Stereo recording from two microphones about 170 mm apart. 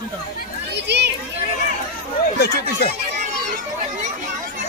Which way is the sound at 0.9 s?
80° right.